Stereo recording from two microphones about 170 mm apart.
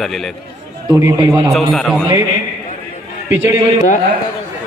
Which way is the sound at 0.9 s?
20° right (ahead or behind).